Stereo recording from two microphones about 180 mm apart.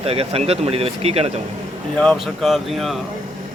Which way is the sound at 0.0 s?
35° right (ahead or behind).